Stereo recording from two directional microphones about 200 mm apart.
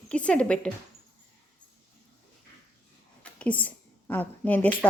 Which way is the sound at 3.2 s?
5° left (ahead or behind).